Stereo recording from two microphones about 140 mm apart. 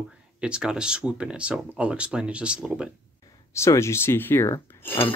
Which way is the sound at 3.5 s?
20° left (ahead or behind).